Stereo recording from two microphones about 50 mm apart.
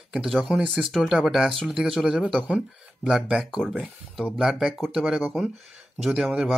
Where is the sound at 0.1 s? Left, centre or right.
Centre.